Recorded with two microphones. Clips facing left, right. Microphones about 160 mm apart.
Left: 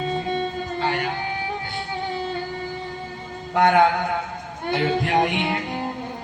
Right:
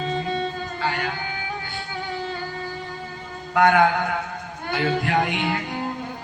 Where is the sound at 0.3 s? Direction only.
25° left (ahead or behind).